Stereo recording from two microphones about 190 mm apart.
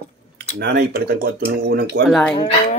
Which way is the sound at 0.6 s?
60° right (ahead or behind).